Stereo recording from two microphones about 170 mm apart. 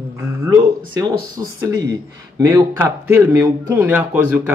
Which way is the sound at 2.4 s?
10° right (ahead or behind).